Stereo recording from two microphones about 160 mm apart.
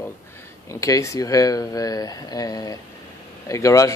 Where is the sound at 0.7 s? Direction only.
20° left (ahead or behind).